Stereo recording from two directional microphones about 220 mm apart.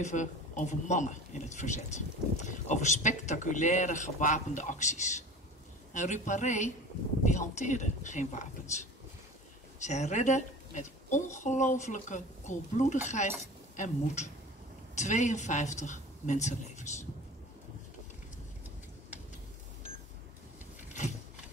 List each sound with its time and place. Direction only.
0.0 s a man's voice: 35° left (ahead or behind)
9.8 s a man's voice: 30° left (ahead or behind)